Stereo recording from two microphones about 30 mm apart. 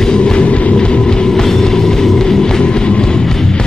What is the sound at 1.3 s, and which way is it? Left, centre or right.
Music, centre.